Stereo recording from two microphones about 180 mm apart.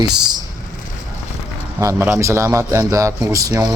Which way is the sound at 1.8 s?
15° right (ahead or behind).